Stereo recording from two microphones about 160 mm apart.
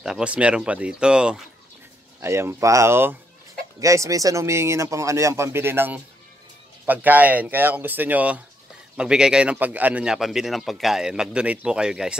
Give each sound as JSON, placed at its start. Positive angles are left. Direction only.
{"t": 0.0, "sound": "a man's voice", "side_deg": -5}
{"t": 2.2, "sound": "a man's voice", "side_deg": -15}